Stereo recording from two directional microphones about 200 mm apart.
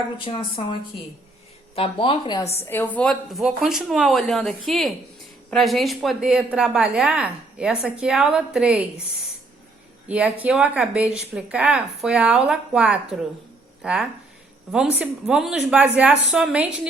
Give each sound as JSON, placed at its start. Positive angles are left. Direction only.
{"t": 0.3, "sound": "speech", "side_deg": 25}
{"t": 2.6, "sound": "a woman's voice", "side_deg": 10}
{"t": 10.1, "sound": "a woman's voice", "side_deg": -5}